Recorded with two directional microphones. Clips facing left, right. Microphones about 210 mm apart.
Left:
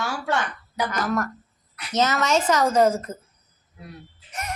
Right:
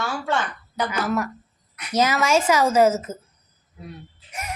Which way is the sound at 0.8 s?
5° right (ahead or behind).